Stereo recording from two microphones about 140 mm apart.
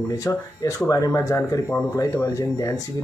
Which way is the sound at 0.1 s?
25° left (ahead or behind).